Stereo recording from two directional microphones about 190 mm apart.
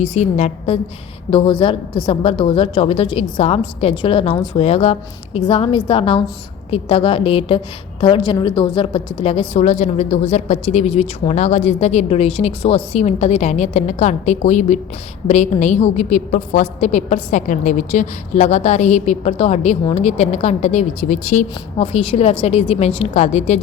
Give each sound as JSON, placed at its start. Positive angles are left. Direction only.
{"t": 0.0, "sound": "a woman's voice", "side_deg": 35}